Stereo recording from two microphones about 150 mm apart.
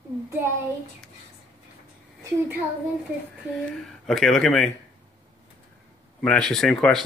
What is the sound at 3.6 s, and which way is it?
Speech, centre (ahead or behind).